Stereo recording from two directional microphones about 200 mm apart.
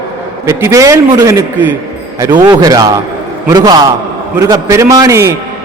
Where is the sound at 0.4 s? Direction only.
15° right (ahead or behind).